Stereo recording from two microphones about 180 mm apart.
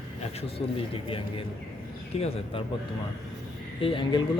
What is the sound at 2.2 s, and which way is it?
Speech, 35° left (ahead or behind).